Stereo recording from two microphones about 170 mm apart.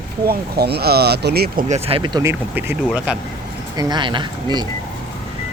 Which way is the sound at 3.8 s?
25° right (ahead or behind).